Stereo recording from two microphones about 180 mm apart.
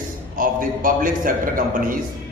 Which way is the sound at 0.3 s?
50° right (ahead or behind).